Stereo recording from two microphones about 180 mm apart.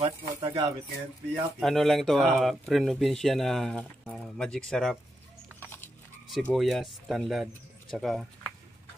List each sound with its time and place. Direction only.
0.0 s speech: 25° right (ahead or behind)
1.6 s speech: centre (ahead or behind)
5.6 s a sound: 10° left (ahead or behind)
6.2 s speech: centre (ahead or behind)